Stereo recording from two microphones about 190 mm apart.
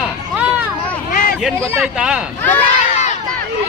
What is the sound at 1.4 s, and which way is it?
Speech, 5° right (ahead or behind).